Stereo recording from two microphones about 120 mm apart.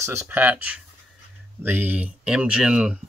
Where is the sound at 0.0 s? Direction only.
20° right (ahead or behind).